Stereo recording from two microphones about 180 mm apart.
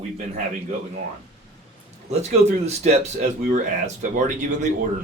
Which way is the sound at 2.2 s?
40° right (ahead or behind).